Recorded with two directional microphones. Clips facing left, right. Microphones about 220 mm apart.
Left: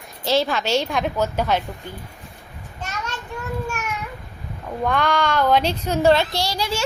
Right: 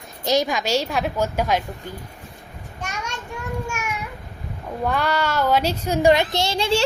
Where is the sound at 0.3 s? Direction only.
15° right (ahead or behind).